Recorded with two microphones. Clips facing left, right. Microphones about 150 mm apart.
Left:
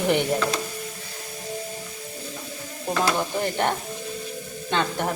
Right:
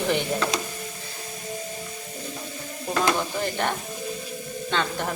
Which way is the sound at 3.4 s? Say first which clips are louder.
Left 2 dB; 15° left (ahead or behind).